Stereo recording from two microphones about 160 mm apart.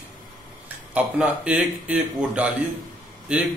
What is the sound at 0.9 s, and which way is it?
A man's voice, 10° right (ahead or behind).